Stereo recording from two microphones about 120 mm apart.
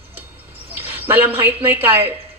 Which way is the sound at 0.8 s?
15° right (ahead or behind).